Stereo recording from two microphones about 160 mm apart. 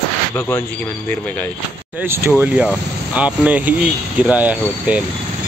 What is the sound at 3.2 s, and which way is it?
Speech, 10° right (ahead or behind).